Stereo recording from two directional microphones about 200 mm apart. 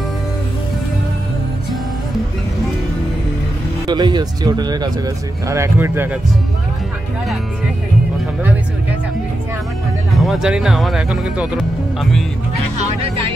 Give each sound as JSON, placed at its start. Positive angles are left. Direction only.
{"t": 3.8, "sound": "speech", "side_deg": -20}
{"t": 10.1, "sound": "speech", "side_deg": 0}